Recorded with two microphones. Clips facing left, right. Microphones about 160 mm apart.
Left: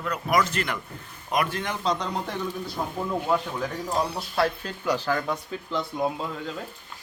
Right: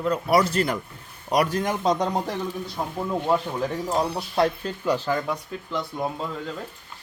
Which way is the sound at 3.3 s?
30° right (ahead or behind).